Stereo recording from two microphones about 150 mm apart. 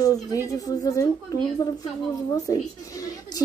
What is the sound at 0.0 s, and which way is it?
A woman's voice, 20° left (ahead or behind).